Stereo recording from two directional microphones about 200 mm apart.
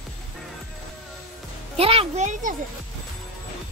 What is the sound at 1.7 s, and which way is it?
Speech, 30° right (ahead or behind).